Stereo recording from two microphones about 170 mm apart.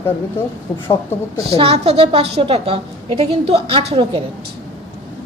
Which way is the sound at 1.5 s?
35° right (ahead or behind).